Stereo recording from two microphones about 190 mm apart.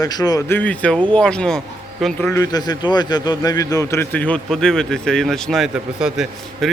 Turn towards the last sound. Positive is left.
turn(degrees=-5)  # may be behind; listen again after turning